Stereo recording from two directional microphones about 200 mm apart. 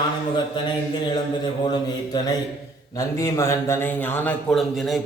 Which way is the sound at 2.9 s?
15° left (ahead or behind).